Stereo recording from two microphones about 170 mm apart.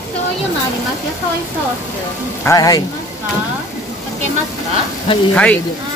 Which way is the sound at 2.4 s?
20° left (ahead or behind).